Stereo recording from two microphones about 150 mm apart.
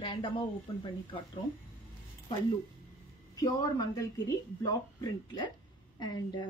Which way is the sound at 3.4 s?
25° left (ahead or behind).